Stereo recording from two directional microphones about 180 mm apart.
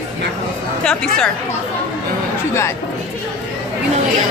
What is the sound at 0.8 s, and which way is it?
Speech, 5° left (ahead or behind).